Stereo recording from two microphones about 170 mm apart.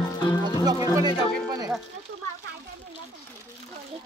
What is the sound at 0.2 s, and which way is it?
Music, 25° left (ahead or behind).